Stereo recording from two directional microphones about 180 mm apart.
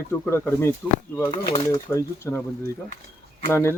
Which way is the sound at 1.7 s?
15° left (ahead or behind).